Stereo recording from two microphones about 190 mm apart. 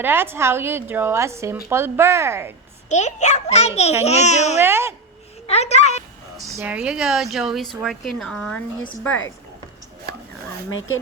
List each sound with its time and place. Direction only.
0.0 s a woman's voice: 10° right (ahead or behind)
2.9 s a child's voice: 35° left (ahead or behind)
4.6 s a woman's voice: 10° right (ahead or behind)
5.5 s a child's voice: 35° left (ahead or behind)
6.3 s speech: 15° right (ahead or behind); by 8.6 s 5° left (ahead or behind)
10.7 s speech: 90° left